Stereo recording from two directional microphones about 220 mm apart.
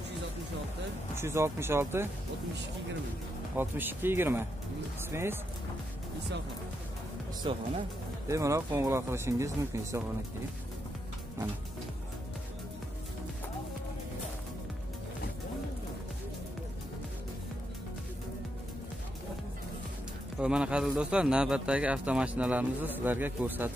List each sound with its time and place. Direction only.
1.1 s speech: 10° right (ahead or behind)
3.5 s speech: 10° right (ahead or behind)
7.4 s speech: 25° right (ahead or behind)
20.3 s speech: 5° right (ahead or behind)